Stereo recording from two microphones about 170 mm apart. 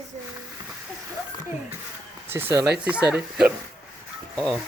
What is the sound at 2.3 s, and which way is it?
Speech, 15° right (ahead or behind).